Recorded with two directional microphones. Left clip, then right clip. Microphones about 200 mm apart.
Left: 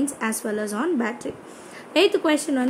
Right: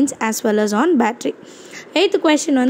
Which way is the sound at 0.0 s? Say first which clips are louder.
Right 8 dB; 35° right (ahead or behind).